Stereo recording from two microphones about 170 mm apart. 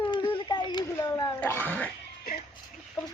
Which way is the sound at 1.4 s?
10° left (ahead or behind).